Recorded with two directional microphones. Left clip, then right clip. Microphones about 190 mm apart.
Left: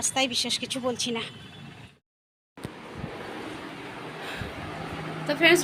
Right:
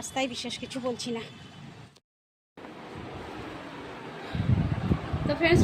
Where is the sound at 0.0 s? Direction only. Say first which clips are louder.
Left 5 dB; 5° right (ahead or behind).